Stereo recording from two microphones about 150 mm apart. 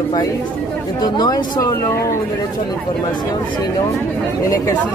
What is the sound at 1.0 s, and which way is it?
Speech, 25° left (ahead or behind).